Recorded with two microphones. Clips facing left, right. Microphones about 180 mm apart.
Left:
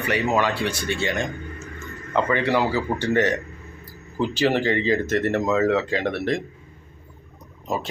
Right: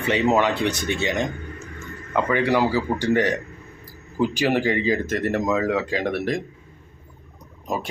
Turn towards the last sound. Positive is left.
turn(degrees=-15)  # may be behind; listen again after turning